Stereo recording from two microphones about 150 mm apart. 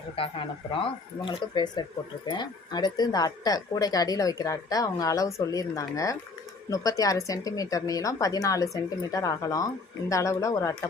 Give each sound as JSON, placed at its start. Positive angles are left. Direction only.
{"t": 0.2, "sound": "speech", "side_deg": 35}